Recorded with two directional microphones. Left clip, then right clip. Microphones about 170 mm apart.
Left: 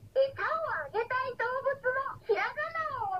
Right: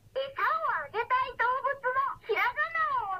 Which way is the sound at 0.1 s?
20° right (ahead or behind).